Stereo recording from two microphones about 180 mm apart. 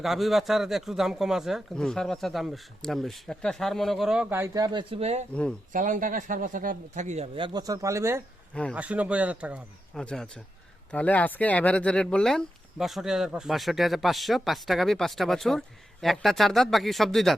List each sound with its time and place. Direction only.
0.0 s speech: centre (ahead or behind); by 5.2 s 35° right (ahead or behind)
5.3 s speech: 5° left (ahead or behind)
5.7 s speech: 45° right (ahead or behind)
7.3 s speech: 25° right (ahead or behind); by 10.0 s 5° right (ahead or behind)
10.0 s speech: 5° left (ahead or behind)